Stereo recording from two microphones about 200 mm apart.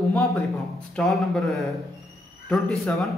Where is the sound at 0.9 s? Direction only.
Centre (ahead or behind).